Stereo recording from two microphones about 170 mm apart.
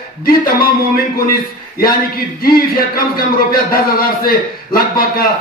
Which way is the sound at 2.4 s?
60° left (ahead or behind).